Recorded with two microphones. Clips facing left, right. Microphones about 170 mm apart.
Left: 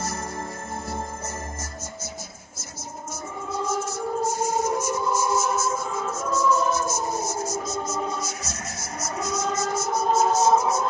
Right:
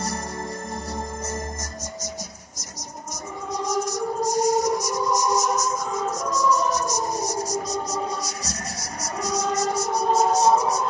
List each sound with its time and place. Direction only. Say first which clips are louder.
3.5 s music: right 2 dB; 40° right (ahead or behind)
7.0 s siren: right 1 dB; 35° right (ahead or behind)
7.6 s music: right 1 dB; 35° right (ahead or behind)